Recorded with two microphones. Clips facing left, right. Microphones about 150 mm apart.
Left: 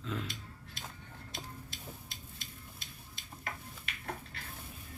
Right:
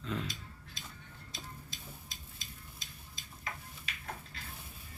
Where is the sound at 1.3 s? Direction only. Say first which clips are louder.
Left 2 dB; 60° left (ahead or behind).